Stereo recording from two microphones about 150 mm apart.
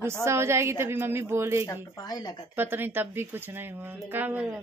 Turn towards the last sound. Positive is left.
turn(degrees=-10)  # may be behind; listen again after turning